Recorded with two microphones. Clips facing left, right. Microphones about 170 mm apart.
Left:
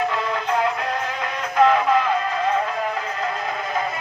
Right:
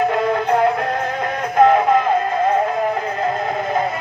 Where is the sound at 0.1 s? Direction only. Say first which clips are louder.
Right 6 dB; 50° right (ahead or behind).